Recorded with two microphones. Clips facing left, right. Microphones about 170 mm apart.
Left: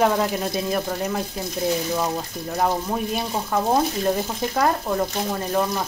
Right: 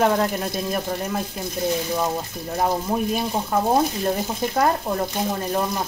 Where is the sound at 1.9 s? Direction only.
5° right (ahead or behind).